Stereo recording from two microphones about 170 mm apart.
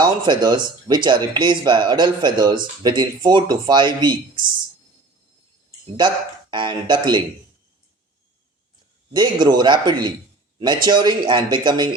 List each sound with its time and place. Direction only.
0.0 s speech: 25° right (ahead or behind)
6.5 s speech: 30° right (ahead or behind)
9.1 s speech: 25° right (ahead or behind)